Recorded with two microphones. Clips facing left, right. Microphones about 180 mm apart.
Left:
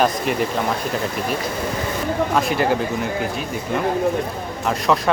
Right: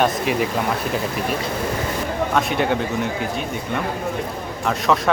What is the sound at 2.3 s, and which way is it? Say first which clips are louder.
Speech: even; centre (ahead or behind).